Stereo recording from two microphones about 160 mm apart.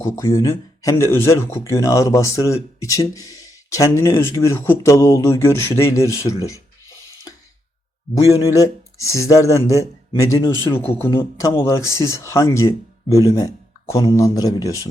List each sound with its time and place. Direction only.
0.0 s speech: 20° left (ahead or behind)
8.1 s speech: 20° left (ahead or behind)